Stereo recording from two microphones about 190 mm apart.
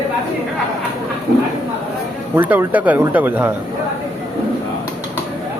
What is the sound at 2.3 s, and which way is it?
Speech, 10° right (ahead or behind).